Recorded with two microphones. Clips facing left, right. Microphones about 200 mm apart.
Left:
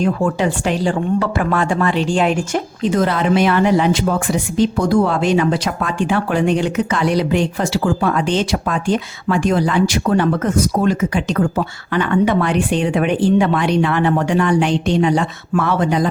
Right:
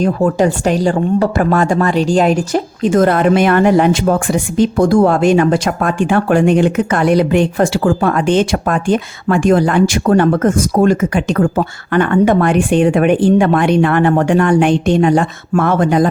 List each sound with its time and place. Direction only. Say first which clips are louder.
0.0 s a woman's voice: right 4 dB; 40° right (ahead or behind)